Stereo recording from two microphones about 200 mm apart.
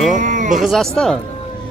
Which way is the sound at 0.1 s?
40° right (ahead or behind).